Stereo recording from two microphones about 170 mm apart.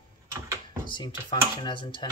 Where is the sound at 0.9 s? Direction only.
30° left (ahead or behind).